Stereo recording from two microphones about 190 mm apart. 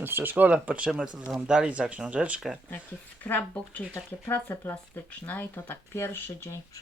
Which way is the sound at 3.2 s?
10° left (ahead or behind).